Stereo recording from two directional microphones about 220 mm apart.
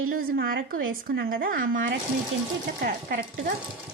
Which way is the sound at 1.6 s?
60° right (ahead or behind).